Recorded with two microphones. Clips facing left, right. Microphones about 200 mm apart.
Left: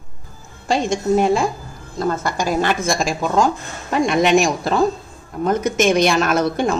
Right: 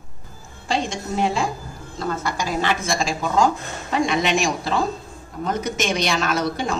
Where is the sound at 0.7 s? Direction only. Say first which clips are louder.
Left 7 dB; 45° left (ahead or behind).